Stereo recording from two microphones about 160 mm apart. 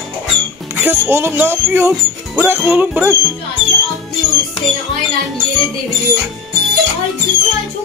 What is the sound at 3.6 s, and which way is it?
Speech, 45° right (ahead or behind).